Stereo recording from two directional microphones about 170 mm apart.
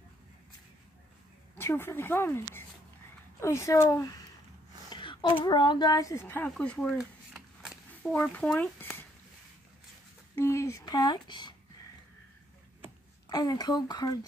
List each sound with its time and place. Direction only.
1.6 s speech: 15° left (ahead or behind)
4.8 s a sound: 30° left (ahead or behind)
5.4 s speech: 25° left (ahead or behind); by 9.0 s 10° left (ahead or behind)
10.3 s speech: 15° left (ahead or behind)
13.3 s speech: 25° left (ahead or behind)